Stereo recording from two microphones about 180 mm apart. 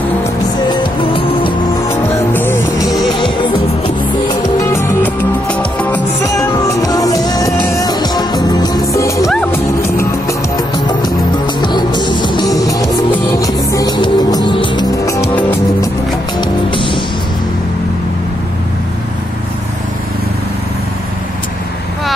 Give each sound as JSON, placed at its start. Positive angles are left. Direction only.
{"t": 0.7, "sound": "music", "side_deg": 30}
{"t": 1.9, "sound": "music", "side_deg": 10}
{"t": 3.0, "sound": "music", "side_deg": 25}
{"t": 4.7, "sound": "music", "side_deg": 10}
{"t": 9.3, "sound": "music", "side_deg": 5}
{"t": 11.6, "sound": "music", "side_deg": 25}
{"t": 16.3, "sound": "music", "side_deg": 30}